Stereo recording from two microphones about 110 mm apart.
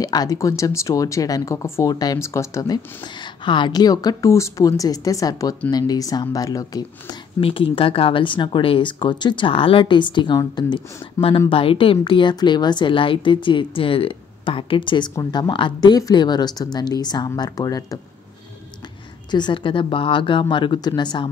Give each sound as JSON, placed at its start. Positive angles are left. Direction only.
{"t": 0.0, "sound": "speech", "side_deg": 35}
{"t": 7.3, "sound": "speech", "side_deg": 55}
{"t": 11.1, "sound": "speech", "side_deg": 55}
{"t": 19.3, "sound": "speech", "side_deg": 45}